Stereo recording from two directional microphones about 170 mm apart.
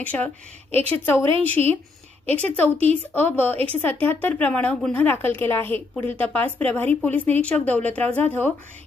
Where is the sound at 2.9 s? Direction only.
10° left (ahead or behind).